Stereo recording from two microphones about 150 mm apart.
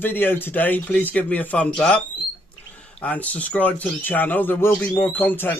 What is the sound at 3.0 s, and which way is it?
Speech, 10° left (ahead or behind).